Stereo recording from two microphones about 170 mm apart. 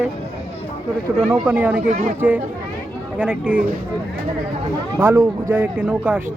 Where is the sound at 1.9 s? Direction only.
50° right (ahead or behind).